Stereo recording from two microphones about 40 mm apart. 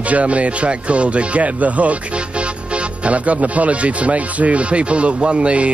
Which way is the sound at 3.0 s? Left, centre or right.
Right.